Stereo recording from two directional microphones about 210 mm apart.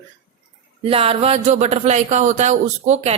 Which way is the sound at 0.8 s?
25° right (ahead or behind).